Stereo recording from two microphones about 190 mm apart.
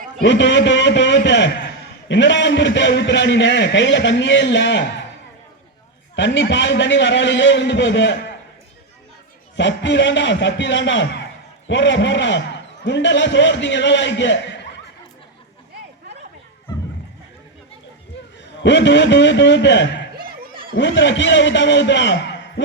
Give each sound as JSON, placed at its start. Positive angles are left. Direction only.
{"t": 0.2, "sound": "a man's voice", "side_deg": 70}
{"t": 6.1, "sound": "a man's voice", "side_deg": 70}
{"t": 9.6, "sound": "a man's voice", "side_deg": 70}
{"t": 18.6, "sound": "a man's voice", "side_deg": 70}